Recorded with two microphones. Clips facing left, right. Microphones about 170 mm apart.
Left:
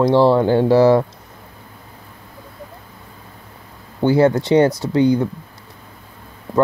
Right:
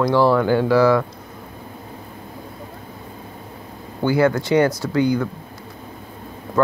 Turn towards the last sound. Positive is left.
turn(degrees=25)  # may be behind; listen again after turning